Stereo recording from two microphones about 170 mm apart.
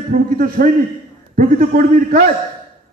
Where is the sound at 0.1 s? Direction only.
55° right (ahead or behind).